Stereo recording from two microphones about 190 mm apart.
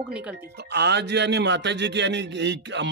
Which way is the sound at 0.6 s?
60° right (ahead or behind).